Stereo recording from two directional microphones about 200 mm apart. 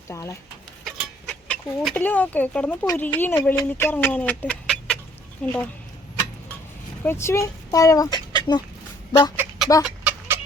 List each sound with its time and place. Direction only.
0.1 s speech: 15° left (ahead or behind)
0.9 s chicken: centre (ahead or behind)
2.8 s speech: 15° left (ahead or behind)
7.0 s speech: 10° left (ahead or behind)
9.3 s a sound: 10° right (ahead or behind)
9.8 s chicken: 5° right (ahead or behind)